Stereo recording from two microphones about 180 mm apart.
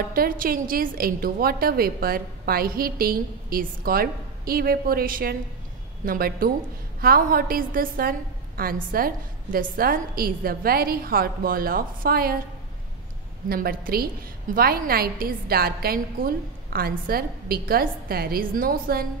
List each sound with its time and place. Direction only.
0.1 s a woman's voice: 55° right (ahead or behind)
13.5 s a woman's voice: 55° right (ahead or behind)